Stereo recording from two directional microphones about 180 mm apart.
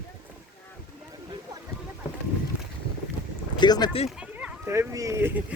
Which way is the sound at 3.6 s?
25° left (ahead or behind).